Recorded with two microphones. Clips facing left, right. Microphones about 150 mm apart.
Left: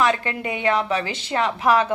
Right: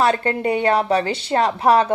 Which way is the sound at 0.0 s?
35° right (ahead or behind).